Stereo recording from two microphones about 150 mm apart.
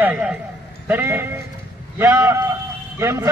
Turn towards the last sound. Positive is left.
turn(degrees=-20)  # may be behind; listen again after turning